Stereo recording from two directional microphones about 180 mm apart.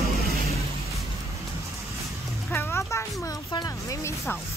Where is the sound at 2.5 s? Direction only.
15° left (ahead or behind).